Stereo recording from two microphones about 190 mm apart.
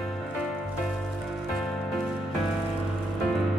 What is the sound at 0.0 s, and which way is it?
Music, centre (ahead or behind).